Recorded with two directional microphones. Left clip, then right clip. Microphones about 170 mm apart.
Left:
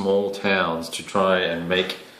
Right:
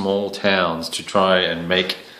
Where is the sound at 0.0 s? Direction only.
25° right (ahead or behind).